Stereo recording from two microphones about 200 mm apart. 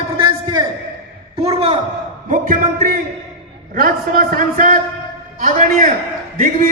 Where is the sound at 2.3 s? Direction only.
45° right (ahead or behind).